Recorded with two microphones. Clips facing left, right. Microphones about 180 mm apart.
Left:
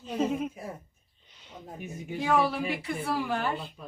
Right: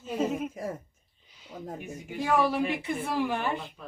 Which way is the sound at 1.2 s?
5° right (ahead or behind).